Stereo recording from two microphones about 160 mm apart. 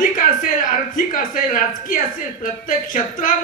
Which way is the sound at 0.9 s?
55° left (ahead or behind).